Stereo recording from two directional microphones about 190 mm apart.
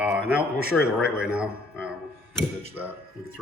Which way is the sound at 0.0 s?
5° right (ahead or behind).